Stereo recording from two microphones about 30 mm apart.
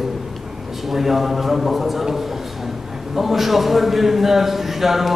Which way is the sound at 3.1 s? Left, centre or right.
Centre.